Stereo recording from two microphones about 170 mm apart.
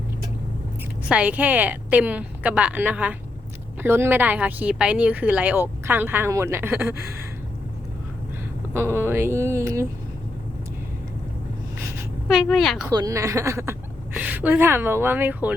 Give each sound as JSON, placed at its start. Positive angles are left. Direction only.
{"t": 1.0, "sound": "speech", "side_deg": -5}
{"t": 8.7, "sound": "speech", "side_deg": -15}
{"t": 12.3, "sound": "a woman's voice", "side_deg": 0}
{"t": 12.9, "sound": "a woman's voice", "side_deg": -20}